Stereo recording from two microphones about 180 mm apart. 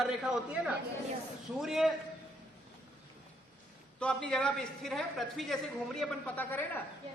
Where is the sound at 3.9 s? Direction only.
5° left (ahead or behind).